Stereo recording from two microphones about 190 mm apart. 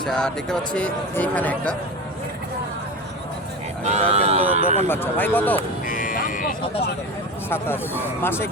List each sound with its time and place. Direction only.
0.0 s speech: 5° left (ahead or behind)
3.8 s speech: 35° right (ahead or behind)
4.9 s speech: 10° left (ahead or behind)
5.8 s vehicle: 45° left (ahead or behind)
8.2 s speech: 10° left (ahead or behind)